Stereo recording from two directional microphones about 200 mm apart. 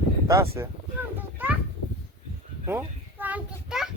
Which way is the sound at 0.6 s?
15° right (ahead or behind).